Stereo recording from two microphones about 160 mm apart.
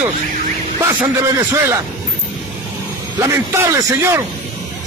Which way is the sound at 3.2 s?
15° right (ahead or behind).